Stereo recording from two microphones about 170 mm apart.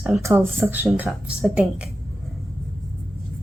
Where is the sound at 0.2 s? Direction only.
15° right (ahead or behind).